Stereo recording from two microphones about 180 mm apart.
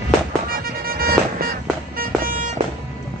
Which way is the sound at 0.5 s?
55° right (ahead or behind).